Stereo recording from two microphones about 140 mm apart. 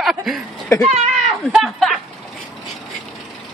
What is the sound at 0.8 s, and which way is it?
Speech, 50° right (ahead or behind).